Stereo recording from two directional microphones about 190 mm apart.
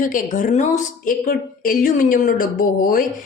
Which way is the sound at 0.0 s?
45° left (ahead or behind).